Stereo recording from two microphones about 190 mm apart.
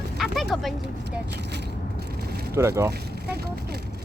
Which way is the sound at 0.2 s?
Centre (ahead or behind).